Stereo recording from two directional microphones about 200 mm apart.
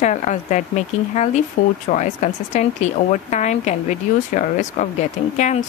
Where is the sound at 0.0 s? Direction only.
35° left (ahead or behind).